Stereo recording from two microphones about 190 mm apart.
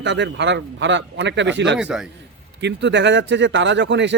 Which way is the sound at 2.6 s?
65° right (ahead or behind).